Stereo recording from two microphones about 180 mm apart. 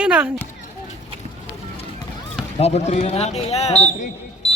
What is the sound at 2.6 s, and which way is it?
A man's voice, 35° left (ahead or behind).